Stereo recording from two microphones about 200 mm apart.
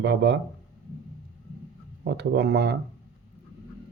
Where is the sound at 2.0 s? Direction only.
55° right (ahead or behind).